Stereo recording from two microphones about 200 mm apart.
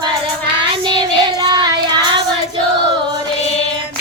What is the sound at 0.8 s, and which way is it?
Child singing, 20° right (ahead or behind).